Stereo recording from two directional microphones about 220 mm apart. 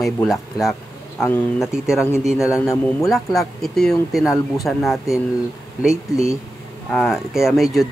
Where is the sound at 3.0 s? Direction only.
Centre (ahead or behind).